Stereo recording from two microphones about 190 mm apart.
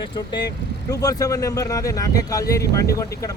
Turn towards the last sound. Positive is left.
turn(degrees=15)  # may be behind; listen again after turning